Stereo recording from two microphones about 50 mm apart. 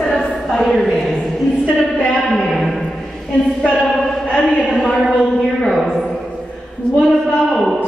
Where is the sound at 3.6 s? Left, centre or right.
Left.